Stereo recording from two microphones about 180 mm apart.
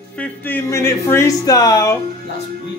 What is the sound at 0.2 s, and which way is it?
Speech, 10° left (ahead or behind).